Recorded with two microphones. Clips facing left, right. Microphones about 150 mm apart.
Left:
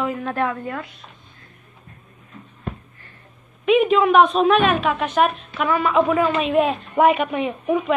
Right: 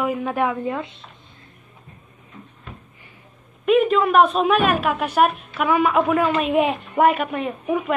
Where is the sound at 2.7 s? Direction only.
50° left (ahead or behind).